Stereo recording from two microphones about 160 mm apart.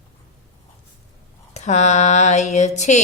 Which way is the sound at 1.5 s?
45° left (ahead or behind).